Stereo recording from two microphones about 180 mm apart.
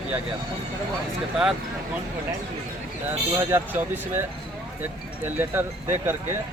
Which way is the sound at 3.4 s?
15° right (ahead or behind).